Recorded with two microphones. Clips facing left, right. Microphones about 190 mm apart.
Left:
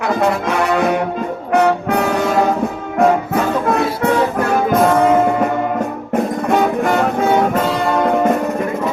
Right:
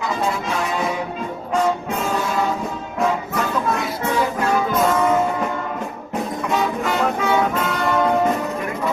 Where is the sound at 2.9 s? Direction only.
60° left (ahead or behind).